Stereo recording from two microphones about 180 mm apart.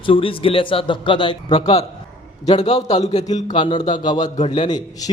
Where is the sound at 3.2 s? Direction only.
25° left (ahead or behind).